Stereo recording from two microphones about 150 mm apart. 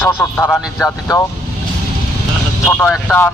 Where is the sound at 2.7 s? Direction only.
10° left (ahead or behind).